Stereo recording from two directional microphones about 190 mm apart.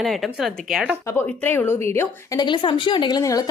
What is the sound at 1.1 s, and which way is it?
Speech, 10° left (ahead or behind).